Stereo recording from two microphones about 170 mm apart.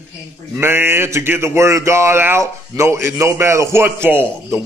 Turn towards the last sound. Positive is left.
turn(degrees=-15)  # may be behind; listen again after turning